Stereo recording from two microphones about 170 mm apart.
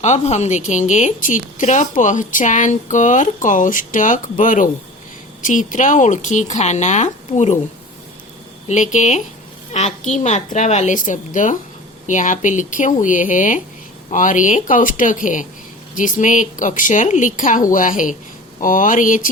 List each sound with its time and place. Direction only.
0.0 s a woman's voice: 40° left (ahead or behind)
8.6 s a woman's voice: 45° left (ahead or behind)